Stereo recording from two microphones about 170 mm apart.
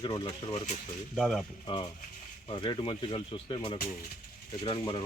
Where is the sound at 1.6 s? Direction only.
25° left (ahead or behind).